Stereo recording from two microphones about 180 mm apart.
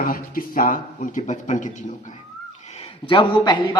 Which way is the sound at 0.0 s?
50° left (ahead or behind).